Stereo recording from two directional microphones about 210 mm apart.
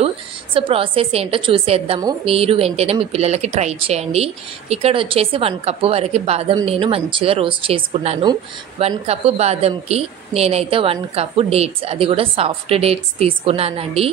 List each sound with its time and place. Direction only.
0.6 s speech: 25° right (ahead or behind)